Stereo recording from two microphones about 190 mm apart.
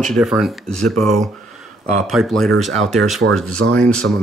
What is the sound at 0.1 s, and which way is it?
Speech, centre (ahead or behind).